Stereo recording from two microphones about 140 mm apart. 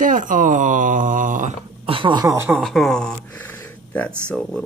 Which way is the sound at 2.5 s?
Centre (ahead or behind).